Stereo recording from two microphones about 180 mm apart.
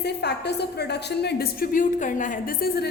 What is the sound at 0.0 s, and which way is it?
A woman's voice, 65° left (ahead or behind).